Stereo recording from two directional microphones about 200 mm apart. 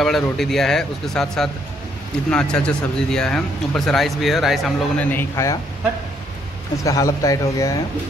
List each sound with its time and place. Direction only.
0.0 s speech: centre (ahead or behind)
6.8 s speech: 15° left (ahead or behind)